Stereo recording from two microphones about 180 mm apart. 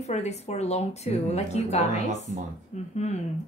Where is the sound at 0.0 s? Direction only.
40° left (ahead or behind).